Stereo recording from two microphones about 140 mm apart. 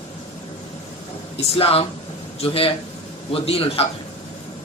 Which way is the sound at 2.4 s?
45° left (ahead or behind).